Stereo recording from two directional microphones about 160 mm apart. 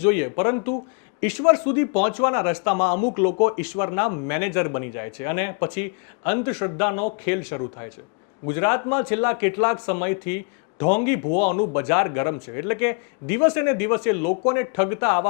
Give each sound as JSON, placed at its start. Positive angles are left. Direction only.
{"t": 0.0, "sound": "a man's voice", "side_deg": 15}